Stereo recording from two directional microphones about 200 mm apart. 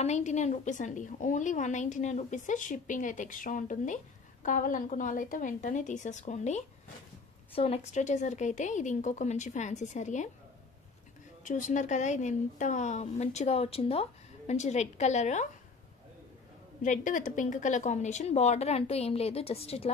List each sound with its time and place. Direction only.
0.0 s a woman's voice: 35° left (ahead or behind)
11.4 s a woman's voice: 40° left (ahead or behind)
16.8 s a woman's voice: 40° left (ahead or behind)